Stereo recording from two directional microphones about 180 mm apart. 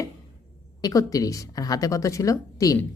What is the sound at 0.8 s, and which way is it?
Speech, 20° left (ahead or behind).